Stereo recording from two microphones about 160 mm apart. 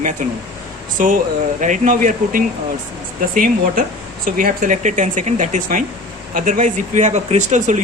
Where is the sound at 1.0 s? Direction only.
50° right (ahead or behind).